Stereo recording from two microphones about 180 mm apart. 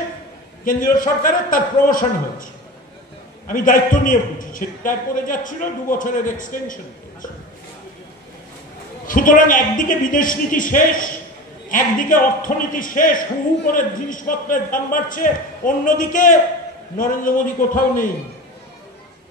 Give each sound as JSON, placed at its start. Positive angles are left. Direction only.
{"t": 0.7, "sound": "a man's voice", "side_deg": 50}
{"t": 3.4, "sound": "a man's voice", "side_deg": 50}
{"t": 9.0, "sound": "a man's voice", "side_deg": 50}